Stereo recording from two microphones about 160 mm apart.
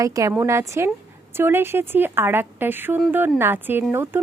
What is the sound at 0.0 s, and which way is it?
Speech, 20° right (ahead or behind).